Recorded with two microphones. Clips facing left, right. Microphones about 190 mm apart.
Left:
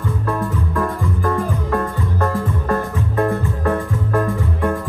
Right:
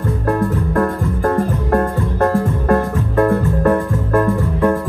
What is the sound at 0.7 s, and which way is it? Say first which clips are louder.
Music: right 4 dB; 55° right (ahead or behind).